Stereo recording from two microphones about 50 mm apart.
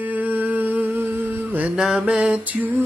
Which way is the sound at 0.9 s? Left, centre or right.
Right.